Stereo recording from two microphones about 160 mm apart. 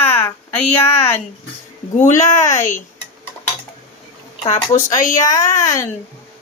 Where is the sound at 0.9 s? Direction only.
40° left (ahead or behind).